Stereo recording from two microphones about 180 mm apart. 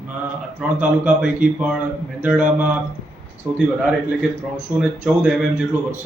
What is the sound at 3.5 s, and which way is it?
Speech, 5° right (ahead or behind).